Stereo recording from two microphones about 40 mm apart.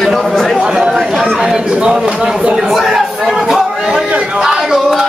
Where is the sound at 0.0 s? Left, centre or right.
Centre.